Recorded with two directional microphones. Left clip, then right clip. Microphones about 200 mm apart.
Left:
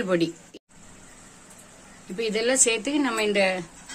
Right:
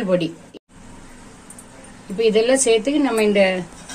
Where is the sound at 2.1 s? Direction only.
35° left (ahead or behind).